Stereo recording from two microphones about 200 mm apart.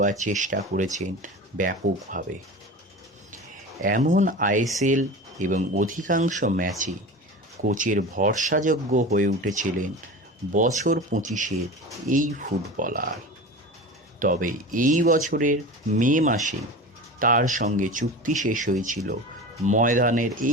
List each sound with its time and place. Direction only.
0.0 s speech: 40° right (ahead or behind)
3.8 s speech: 40° right (ahead or behind)
7.7 s speech: 40° right (ahead or behind)
14.2 s speech: 45° right (ahead or behind)